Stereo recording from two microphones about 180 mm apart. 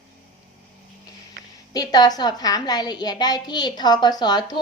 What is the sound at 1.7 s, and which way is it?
A woman's voice, 20° left (ahead or behind).